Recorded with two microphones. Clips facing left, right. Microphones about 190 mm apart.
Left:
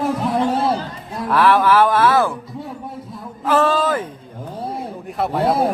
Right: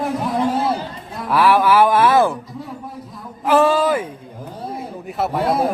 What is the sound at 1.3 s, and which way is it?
Speech, 10° right (ahead or behind).